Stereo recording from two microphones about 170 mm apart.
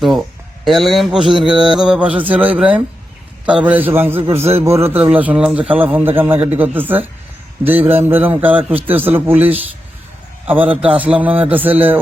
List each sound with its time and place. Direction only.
0.0 s speech: centre (ahead or behind)
1.2 s music: 30° right (ahead or behind)
1.7 s a man's voice: 5° right (ahead or behind)